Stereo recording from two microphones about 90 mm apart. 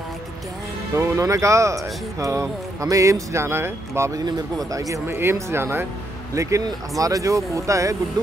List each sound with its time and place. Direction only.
0.9 s speech: 35° right (ahead or behind)
4.3 s speech: 45° right (ahead or behind)
5.0 s speech: 25° right (ahead or behind)